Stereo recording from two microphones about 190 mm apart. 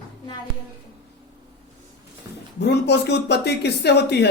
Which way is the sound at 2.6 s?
60° left (ahead or behind).